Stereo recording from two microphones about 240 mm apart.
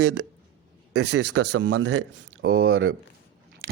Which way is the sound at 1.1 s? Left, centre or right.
Right.